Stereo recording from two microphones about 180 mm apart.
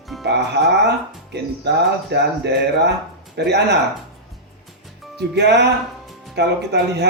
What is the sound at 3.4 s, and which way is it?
Speech, 70° right (ahead or behind).